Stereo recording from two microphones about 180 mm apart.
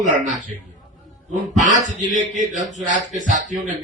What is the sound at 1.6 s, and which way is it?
Speech, 45° right (ahead or behind).